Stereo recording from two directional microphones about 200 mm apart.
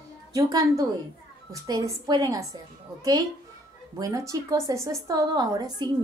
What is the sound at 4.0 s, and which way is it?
A woman's voice, 15° right (ahead or behind).